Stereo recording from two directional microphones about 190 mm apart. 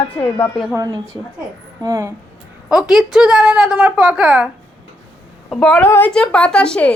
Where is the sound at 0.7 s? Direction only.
20° right (ahead or behind).